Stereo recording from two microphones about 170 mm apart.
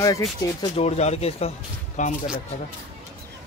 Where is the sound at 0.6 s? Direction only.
35° left (ahead or behind).